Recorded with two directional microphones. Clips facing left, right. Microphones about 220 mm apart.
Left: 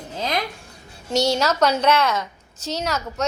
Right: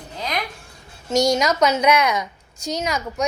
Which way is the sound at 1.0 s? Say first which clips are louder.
Right 2 dB; 10° right (ahead or behind).